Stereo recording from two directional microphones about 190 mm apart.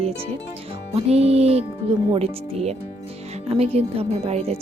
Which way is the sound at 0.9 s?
35° right (ahead or behind).